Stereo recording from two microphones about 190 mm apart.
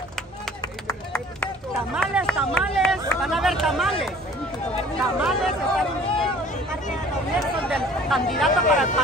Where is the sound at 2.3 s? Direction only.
Centre (ahead or behind).